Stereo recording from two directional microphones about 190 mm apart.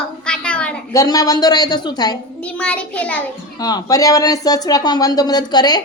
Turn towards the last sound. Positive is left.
turn(degrees=20)  # may be behind; listen again after turning